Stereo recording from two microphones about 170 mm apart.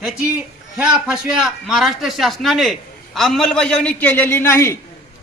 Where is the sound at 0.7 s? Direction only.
5° right (ahead or behind).